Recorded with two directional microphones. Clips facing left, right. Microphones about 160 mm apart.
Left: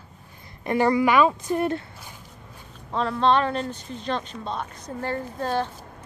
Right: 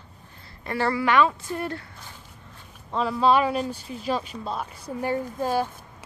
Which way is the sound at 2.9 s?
5° right (ahead or behind).